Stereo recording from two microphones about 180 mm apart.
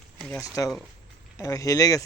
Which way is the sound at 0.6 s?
20° left (ahead or behind).